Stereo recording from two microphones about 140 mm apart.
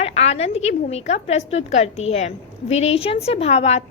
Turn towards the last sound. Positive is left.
turn(degrees=50)  # may be behind; listen again after turning